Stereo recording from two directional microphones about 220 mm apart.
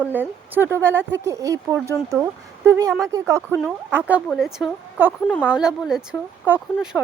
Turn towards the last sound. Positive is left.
turn(degrees=-5)  # may be behind; listen again after turning